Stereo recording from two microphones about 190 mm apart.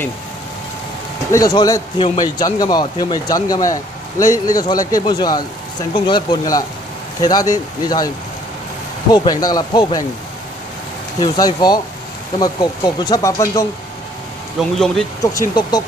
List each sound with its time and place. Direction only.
1.3 s a man's voice: 20° left (ahead or behind)
9.1 s a man's voice: 20° left (ahead or behind)
11.1 s a man's voice: 20° left (ahead or behind)
14.6 s speech: centre (ahead or behind)
15.2 s speech: 15° left (ahead or behind)